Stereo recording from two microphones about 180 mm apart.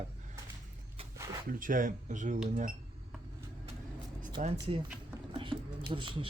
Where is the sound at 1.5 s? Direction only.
50° right (ahead or behind).